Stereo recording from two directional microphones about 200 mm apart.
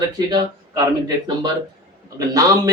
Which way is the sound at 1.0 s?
20° right (ahead or behind).